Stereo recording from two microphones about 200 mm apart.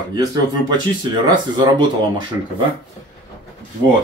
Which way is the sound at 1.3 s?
20° right (ahead or behind).